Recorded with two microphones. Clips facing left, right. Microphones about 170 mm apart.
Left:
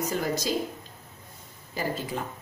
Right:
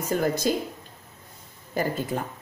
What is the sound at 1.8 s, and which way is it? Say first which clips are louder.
Speech: right 4 dB; 50° right (ahead or behind).